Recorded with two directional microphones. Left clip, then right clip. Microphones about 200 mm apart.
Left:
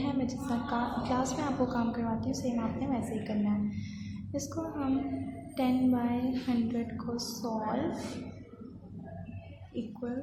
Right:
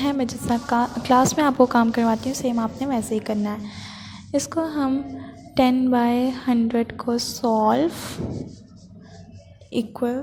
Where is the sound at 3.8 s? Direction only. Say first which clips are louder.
Right 8 dB; 40° right (ahead or behind).